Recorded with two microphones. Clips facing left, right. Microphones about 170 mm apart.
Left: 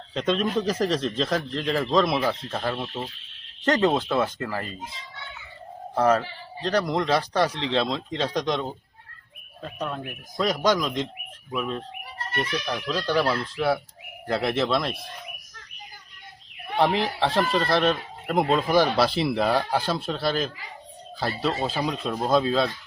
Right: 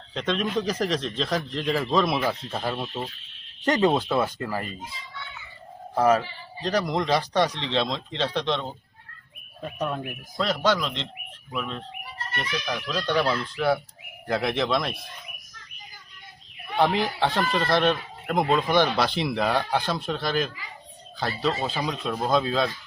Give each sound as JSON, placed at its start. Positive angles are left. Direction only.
{"t": 0.1, "sound": "speech", "side_deg": 5}
{"t": 5.9, "sound": "speech", "side_deg": -5}
{"t": 9.6, "sound": "speech", "side_deg": -10}
{"t": 10.3, "sound": "speech", "side_deg": 15}
{"t": 16.7, "sound": "speech", "side_deg": 0}